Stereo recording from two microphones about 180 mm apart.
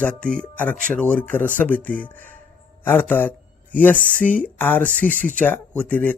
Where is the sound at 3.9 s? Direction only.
45° left (ahead or behind).